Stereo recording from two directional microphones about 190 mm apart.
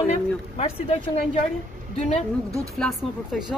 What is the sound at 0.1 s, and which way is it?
A woman's voice, 35° left (ahead or behind).